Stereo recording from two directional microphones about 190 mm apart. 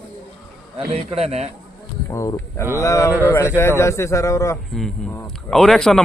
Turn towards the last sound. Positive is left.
turn(degrees=0)  # may be behind; listen again after turning